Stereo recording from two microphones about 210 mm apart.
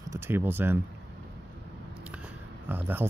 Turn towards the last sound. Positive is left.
turn(degrees=-10)  # may be behind; listen again after turning